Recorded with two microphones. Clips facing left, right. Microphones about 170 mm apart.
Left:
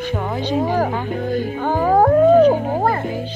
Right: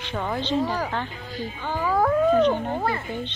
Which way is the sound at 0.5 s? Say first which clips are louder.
Left 8 dB; 50° left (ahead or behind).